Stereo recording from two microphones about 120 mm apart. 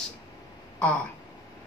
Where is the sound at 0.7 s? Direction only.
10° left (ahead or behind).